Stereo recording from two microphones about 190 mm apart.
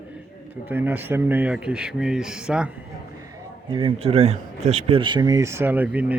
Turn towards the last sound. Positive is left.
turn(degrees=-5)  # may be behind; listen again after turning